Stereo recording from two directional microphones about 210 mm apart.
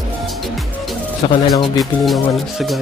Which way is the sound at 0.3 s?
Centre (ahead or behind).